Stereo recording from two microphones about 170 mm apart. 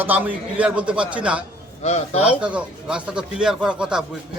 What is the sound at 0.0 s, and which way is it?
A man's voice, 10° right (ahead or behind).